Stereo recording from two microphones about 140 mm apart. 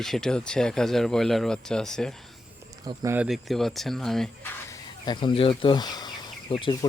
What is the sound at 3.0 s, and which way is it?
Speech, 15° right (ahead or behind).